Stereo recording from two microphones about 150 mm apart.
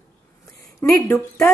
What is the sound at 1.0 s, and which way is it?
Speech, 15° left (ahead or behind).